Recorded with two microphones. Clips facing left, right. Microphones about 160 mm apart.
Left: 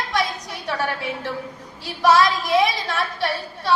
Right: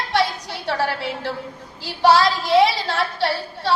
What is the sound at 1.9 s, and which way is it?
Child singing, 30° right (ahead or behind).